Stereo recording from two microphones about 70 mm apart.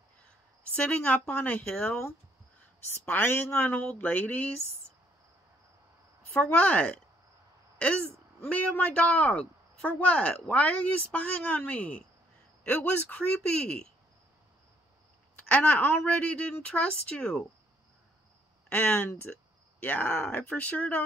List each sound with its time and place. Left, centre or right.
0.7 s a man's voice: left
3.1 s a man's voice: left
6.3 s a man's voice: left
8.5 s a man's voice: centre
15.4 s a woman's voice: left
18.7 s a man's voice: left